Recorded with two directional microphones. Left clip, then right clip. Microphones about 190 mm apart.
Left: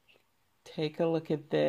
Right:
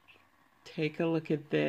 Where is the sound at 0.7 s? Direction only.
5° left (ahead or behind).